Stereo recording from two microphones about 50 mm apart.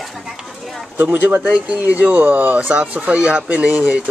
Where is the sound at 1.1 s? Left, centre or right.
Right.